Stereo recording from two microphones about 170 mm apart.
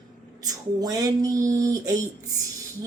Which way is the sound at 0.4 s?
20° right (ahead or behind).